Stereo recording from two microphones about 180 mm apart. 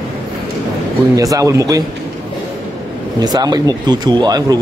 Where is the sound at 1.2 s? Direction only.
20° right (ahead or behind).